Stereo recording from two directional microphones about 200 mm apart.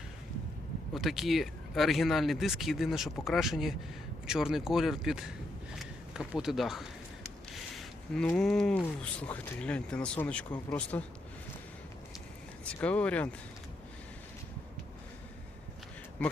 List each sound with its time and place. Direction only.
0.9 s speech: centre (ahead or behind)
12.6 s speech: 5° left (ahead or behind)
16.2 s speech: 5° left (ahead or behind)